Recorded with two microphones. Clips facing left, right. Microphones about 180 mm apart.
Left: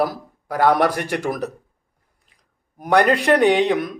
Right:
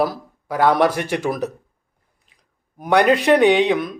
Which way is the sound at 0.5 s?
40° left (ahead or behind).